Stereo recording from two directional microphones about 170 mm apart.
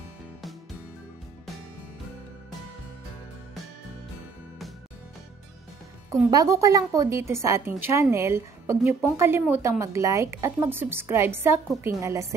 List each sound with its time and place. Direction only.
6.3 s a woman's voice: 20° right (ahead or behind)